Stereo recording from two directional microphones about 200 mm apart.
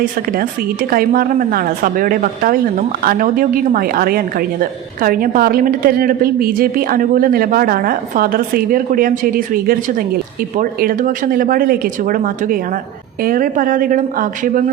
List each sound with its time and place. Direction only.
0.9 s a woman's voice: 45° right (ahead or behind)